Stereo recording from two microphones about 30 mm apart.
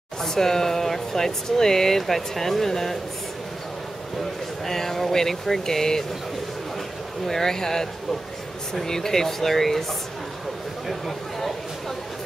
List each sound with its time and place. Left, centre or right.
0.2 s speech: centre
4.6 s speech: centre
7.2 s speech: centre
10.9 s speech: centre